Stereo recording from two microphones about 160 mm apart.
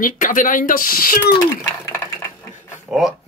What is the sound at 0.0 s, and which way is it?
Speech, 55° left (ahead or behind).